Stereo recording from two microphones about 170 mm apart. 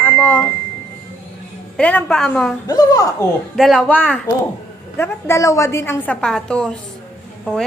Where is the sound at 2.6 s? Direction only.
25° left (ahead or behind).